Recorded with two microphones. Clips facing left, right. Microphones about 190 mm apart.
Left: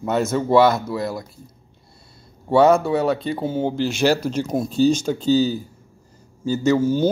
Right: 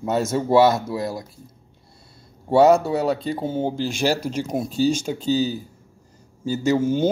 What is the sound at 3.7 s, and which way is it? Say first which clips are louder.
Speech: left 5 dB; 10° right (ahead or behind).